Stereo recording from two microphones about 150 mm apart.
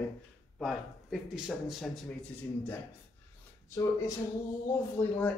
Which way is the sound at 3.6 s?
20° left (ahead or behind).